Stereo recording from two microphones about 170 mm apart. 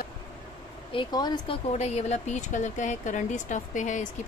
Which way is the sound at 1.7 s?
40° left (ahead or behind).